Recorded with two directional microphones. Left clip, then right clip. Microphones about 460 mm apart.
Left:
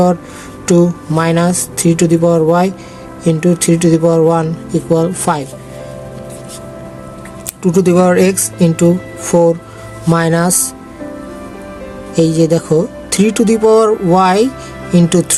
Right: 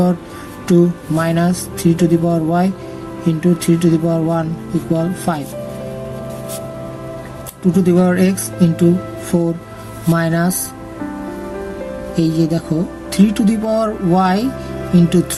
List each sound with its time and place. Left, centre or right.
0.7 s speech: left
7.7 s speech: centre
12.1 s speech: centre